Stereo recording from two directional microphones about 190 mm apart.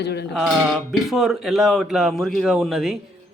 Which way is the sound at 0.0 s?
60° left (ahead or behind).